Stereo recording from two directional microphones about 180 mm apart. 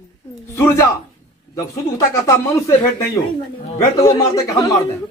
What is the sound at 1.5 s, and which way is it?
Speech, 15° left (ahead or behind).